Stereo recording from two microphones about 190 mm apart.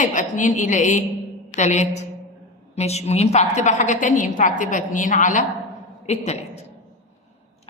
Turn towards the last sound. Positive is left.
turn(degrees=35)  # may be behind; listen again after turning